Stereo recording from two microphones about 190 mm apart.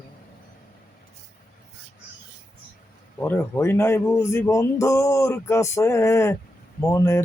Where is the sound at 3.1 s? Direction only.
10° left (ahead or behind).